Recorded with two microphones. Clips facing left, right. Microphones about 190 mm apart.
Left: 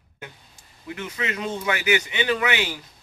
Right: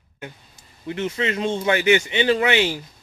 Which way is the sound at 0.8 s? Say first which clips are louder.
Right 6 dB; 25° right (ahead or behind).